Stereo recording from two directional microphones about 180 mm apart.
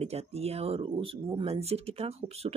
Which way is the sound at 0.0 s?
35° right (ahead or behind).